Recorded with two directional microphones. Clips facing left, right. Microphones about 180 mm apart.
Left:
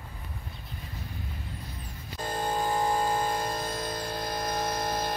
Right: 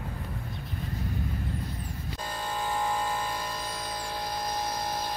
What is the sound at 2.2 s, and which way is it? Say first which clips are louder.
Music: left 5 dB; 45° left (ahead or behind).